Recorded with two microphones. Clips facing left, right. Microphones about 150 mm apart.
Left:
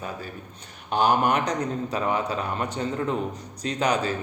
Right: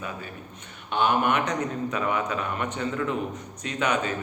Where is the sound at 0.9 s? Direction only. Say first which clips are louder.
Left 2 dB; 40° left (ahead or behind).